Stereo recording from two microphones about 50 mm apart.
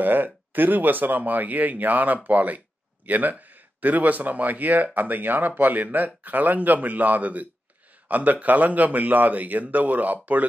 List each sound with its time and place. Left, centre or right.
0.0 s speech: right